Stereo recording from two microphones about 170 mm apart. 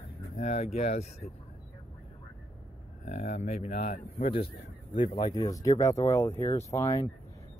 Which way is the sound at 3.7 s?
50° left (ahead or behind).